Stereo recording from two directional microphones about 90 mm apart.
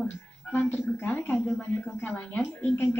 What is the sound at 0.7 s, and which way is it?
A woman's voice, 20° left (ahead or behind).